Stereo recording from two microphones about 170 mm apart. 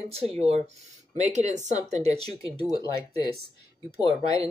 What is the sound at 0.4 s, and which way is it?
Speech, 40° right (ahead or behind).